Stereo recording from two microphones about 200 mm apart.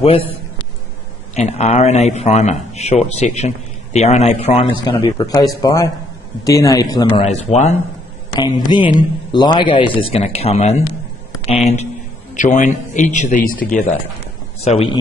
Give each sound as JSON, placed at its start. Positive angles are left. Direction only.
{"t": 1.3, "sound": "a man's voice", "side_deg": 35}
{"t": 7.2, "sound": "a man's voice", "side_deg": 35}
{"t": 8.4, "sound": "a man's voice", "side_deg": 20}
{"t": 14.6, "sound": "a man's voice", "side_deg": 30}